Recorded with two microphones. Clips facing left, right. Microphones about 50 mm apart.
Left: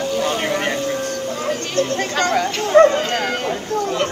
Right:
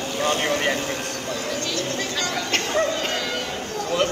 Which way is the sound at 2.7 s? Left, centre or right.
Left.